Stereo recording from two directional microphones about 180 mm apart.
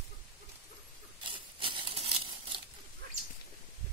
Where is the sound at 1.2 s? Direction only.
30° right (ahead or behind).